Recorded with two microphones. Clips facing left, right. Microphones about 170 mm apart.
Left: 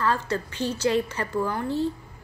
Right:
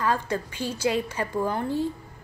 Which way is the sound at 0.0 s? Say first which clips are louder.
Even; 15° right (ahead or behind).